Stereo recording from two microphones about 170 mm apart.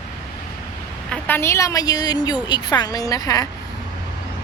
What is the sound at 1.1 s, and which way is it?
A woman's voice, 10° left (ahead or behind).